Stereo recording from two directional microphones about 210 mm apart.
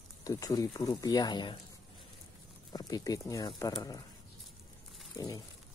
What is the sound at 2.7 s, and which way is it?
Speech, 20° left (ahead or behind).